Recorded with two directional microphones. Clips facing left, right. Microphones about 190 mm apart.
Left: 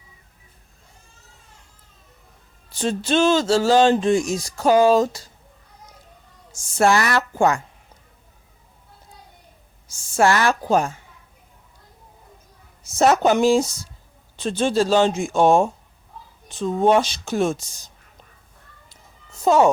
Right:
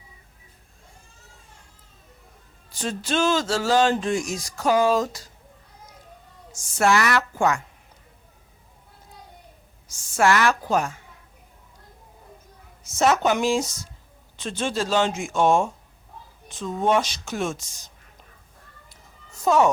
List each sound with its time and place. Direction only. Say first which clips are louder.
2.7 s speech: left 5 dB; 25° left (ahead or behind)
6.5 s speech: left 3 dB; 30° left (ahead or behind)
9.9 s speech: left 2 dB; 30° left (ahead or behind)
12.8 s speech: left 4 dB; 35° left (ahead or behind)
19.4 s speech: left 3 dB; 30° left (ahead or behind)